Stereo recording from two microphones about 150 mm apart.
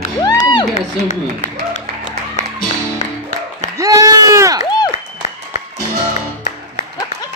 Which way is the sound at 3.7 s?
25° right (ahead or behind).